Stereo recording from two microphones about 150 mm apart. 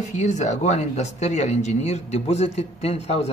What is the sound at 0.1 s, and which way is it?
Speech, 50° left (ahead or behind).